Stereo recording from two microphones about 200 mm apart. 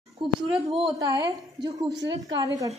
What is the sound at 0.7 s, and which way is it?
A woman's voice, 25° right (ahead or behind).